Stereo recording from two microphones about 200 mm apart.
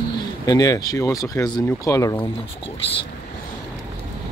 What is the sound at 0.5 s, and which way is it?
Speech, 20° left (ahead or behind).